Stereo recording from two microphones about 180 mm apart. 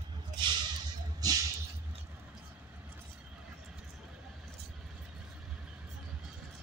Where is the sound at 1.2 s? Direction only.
20° right (ahead or behind).